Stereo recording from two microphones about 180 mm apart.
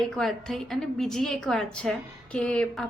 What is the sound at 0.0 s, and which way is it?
A woman's voice, centre (ahead or behind).